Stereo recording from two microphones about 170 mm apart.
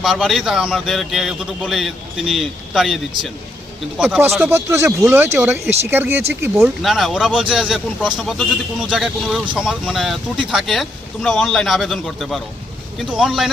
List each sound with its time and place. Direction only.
0.0 s a man's voice: centre (ahead or behind)
6.6 s a man's voice: centre (ahead or behind)